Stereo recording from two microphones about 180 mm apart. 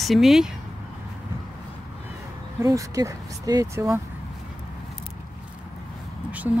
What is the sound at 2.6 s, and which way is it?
Speech, 20° right (ahead or behind).